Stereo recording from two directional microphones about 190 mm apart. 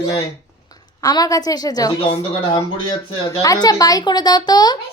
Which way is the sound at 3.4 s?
20° left (ahead or behind).